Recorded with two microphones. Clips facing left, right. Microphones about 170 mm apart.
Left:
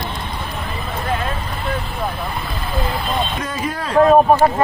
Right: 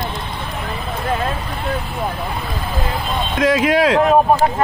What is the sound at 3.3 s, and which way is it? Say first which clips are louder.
Speech: right 10 dB; 90° right.